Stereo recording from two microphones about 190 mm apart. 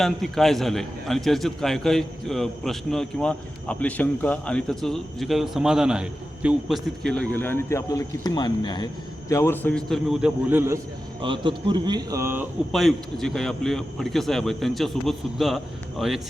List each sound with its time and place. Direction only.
0.0 s a man's voice: centre (ahead or behind)
11.2 s speech: 25° right (ahead or behind)
12.7 s a man's voice: centre (ahead or behind)